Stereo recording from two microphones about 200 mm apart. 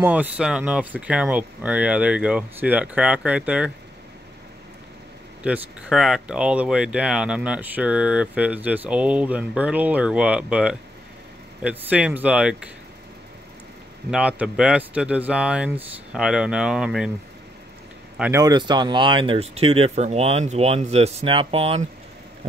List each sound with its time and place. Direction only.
0.0 s speech: 10° right (ahead or behind)
5.4 s speech: 5° right (ahead or behind)
14.1 s speech: 5° right (ahead or behind)
18.3 s speech: 20° right (ahead or behind)